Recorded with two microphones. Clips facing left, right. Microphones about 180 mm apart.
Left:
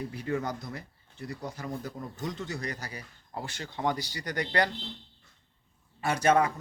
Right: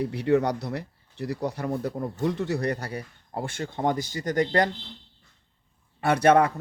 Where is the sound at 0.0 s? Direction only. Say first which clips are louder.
Right 9 dB; 70° right (ahead or behind); by 4.7 s 45° right (ahead or behind).